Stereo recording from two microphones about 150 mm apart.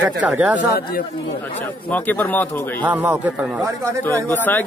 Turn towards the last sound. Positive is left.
turn(degrees=15)  # may be behind; listen again after turning